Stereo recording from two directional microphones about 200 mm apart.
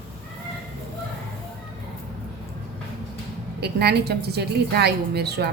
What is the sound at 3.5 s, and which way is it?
A woman's voice, 55° right (ahead or behind).